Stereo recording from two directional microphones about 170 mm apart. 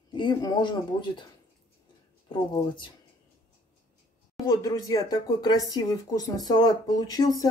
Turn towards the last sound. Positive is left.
turn(degrees=20)  # may be behind; listen again after turning